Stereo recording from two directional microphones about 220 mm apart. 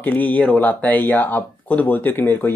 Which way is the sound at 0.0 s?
5° left (ahead or behind).